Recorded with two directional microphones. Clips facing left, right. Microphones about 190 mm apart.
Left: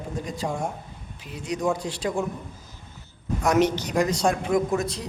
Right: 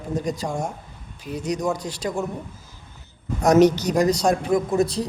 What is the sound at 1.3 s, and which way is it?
Speech, 40° right (ahead or behind).